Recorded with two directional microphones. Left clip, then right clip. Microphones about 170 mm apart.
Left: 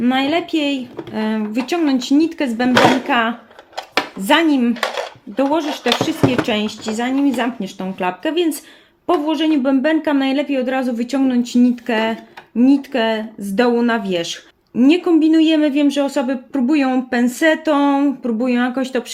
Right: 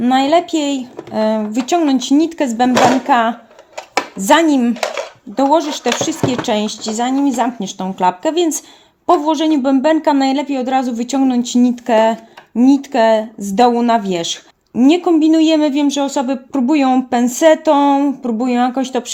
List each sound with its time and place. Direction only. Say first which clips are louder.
0.0 s speech: right 5 dB; 50° right (ahead or behind)